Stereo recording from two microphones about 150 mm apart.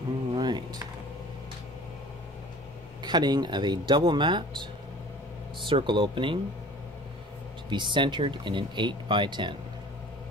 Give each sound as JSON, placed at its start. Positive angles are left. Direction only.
{"t": 0.4, "sound": "a sound", "side_deg": -30}
{"t": 3.0, "sound": "speech", "side_deg": -30}
{"t": 5.7, "sound": "speech", "side_deg": -35}
{"t": 7.7, "sound": "speech", "side_deg": -30}